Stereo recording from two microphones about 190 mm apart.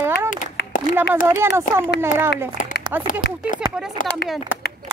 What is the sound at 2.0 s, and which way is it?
Speech, 10° right (ahead or behind).